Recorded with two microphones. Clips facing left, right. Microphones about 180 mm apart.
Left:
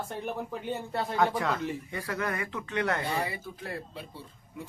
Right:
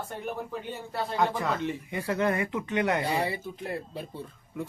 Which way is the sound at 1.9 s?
25° right (ahead or behind).